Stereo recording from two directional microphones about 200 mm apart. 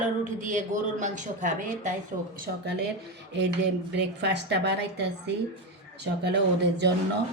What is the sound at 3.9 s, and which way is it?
Speech, 60° right (ahead or behind).